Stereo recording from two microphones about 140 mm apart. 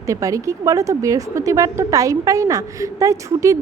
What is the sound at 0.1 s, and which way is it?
A woman's voice, 25° right (ahead or behind).